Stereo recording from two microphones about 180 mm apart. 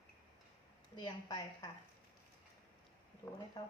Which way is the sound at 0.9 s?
20° left (ahead or behind).